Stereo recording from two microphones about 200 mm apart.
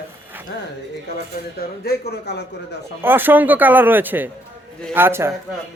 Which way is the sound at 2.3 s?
55° left (ahead or behind).